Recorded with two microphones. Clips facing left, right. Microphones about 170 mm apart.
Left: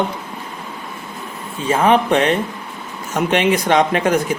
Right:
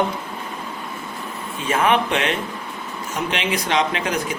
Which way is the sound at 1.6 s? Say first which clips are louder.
Left 5 dB; 30° left (ahead or behind).